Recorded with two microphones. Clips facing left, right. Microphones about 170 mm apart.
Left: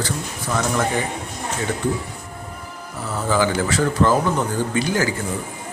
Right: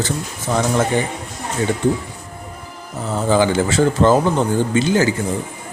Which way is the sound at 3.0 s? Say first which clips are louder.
Right 4 dB; 25° right (ahead or behind).